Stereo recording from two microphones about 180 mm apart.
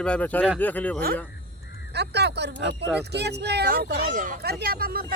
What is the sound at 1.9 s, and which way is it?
Speech, 70° right (ahead or behind).